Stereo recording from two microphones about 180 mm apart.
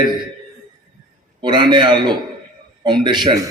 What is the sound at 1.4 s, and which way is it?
A man's voice, 25° right (ahead or behind).